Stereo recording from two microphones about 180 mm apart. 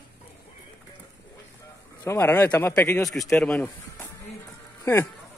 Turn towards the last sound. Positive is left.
turn(degrees=10)  # may be behind; listen again after turning